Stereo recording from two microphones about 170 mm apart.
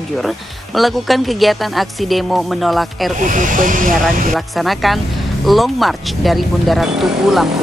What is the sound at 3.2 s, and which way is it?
Speech, 50° right (ahead or behind).